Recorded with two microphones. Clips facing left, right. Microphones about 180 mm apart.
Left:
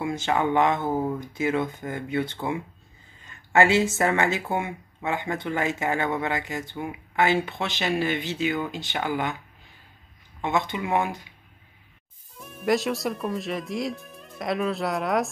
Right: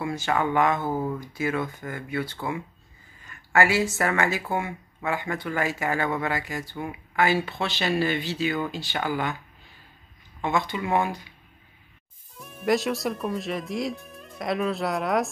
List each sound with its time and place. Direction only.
0.0 s speech: 20° left (ahead or behind)
10.4 s speech: 20° left (ahead or behind)
12.4 s speech: centre (ahead or behind)